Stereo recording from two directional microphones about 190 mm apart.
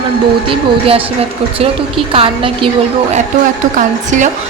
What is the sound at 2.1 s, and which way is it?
Speech, 30° right (ahead or behind).